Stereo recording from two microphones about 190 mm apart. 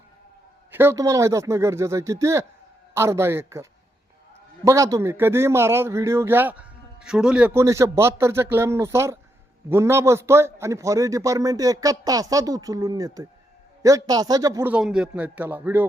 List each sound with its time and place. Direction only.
0.7 s a man's voice: 10° right (ahead or behind)